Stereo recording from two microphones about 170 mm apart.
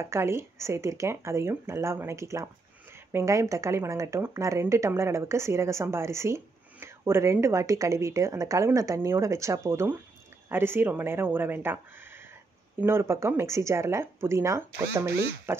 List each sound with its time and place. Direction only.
0.0 s speech: 15° right (ahead or behind)